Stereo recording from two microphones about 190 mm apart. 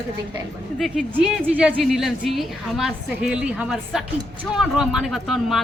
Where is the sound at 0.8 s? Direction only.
Centre (ahead or behind).